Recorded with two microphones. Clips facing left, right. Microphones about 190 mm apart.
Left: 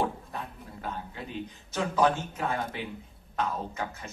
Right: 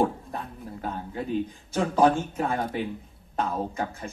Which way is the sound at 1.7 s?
50° right (ahead or behind).